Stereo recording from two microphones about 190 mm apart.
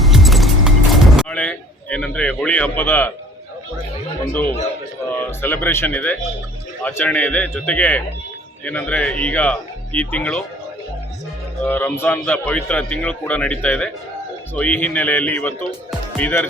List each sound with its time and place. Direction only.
0.0 s music: centre (ahead or behind)
1.3 s a man's voice: 10° left (ahead or behind)
4.3 s speech: 10° left (ahead or behind)
11.6 s speech: 10° left (ahead or behind)